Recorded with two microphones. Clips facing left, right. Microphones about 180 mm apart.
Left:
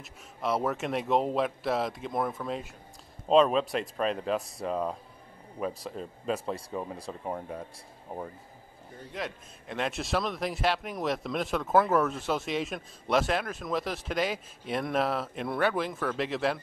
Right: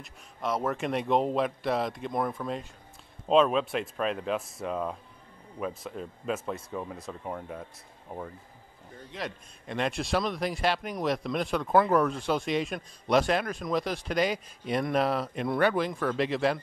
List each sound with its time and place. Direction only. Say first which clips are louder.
0.0 s a man's voice: left 1 dB; centre (ahead or behind)
5.7 s speech: even; 35° left (ahead or behind)
6.7 s speech: left 1 dB; 15° left (ahead or behind)
7.0 s speech: left 1 dB; 30° left (ahead or behind)
9.2 s a man's voice: right 1 dB; centre (ahead or behind)